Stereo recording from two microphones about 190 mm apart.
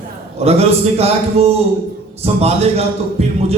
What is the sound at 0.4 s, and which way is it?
A man's voice, 35° right (ahead or behind).